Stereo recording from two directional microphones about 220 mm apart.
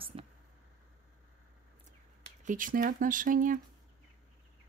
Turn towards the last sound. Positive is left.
turn(degrees=-35)  # may be behind; listen again after turning